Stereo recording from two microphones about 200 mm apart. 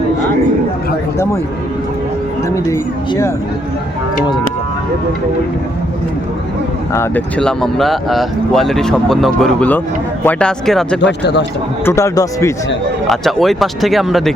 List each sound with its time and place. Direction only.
6.9 s speech: 10° left (ahead or behind)
11.0 s speech: 60° left (ahead or behind)
11.9 s speech: 15° left (ahead or behind)
13.1 s speech: centre (ahead or behind)